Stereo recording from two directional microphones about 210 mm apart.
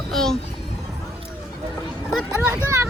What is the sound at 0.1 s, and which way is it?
Speech, centre (ahead or behind).